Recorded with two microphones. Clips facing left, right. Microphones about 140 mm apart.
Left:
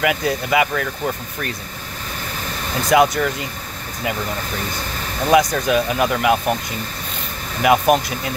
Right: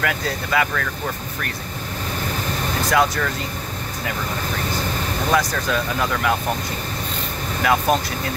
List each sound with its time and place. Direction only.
0.0 s speech: 15° left (ahead or behind)
2.9 s speech: 20° left (ahead or behind)
5.3 s speech: 20° left (ahead or behind)
7.6 s speech: 15° left (ahead or behind)